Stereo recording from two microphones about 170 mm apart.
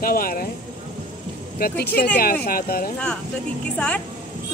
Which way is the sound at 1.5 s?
60° left (ahead or behind).